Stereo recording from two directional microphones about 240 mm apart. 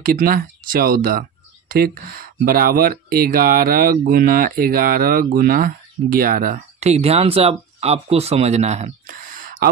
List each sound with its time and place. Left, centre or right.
0.0 s speech: right